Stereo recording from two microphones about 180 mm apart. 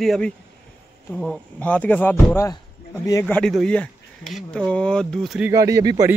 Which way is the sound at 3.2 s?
5° left (ahead or behind).